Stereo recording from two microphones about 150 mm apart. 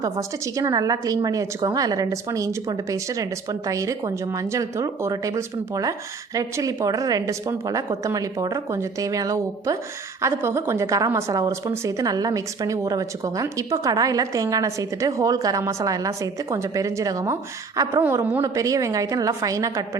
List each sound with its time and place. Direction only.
0.0 s a woman's voice: 20° right (ahead or behind)